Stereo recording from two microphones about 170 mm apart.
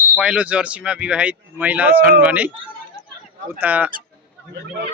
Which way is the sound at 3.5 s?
10° right (ahead or behind).